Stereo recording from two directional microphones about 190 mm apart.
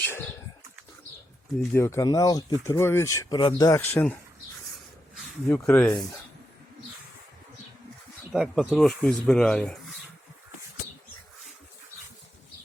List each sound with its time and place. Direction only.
0.0 s a sound: 10° left (ahead or behind)
1.7 s speech: 15° left (ahead or behind)
3.8 s speech: 10° left (ahead or behind)
5.5 s speech: 5° left (ahead or behind)
8.3 s speech: centre (ahead or behind)